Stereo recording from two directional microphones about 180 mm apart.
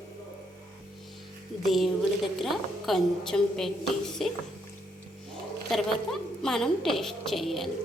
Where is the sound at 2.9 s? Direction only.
Centre (ahead or behind).